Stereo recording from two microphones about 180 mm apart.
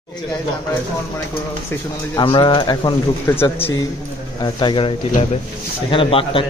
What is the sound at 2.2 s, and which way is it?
Speech, 25° left (ahead or behind).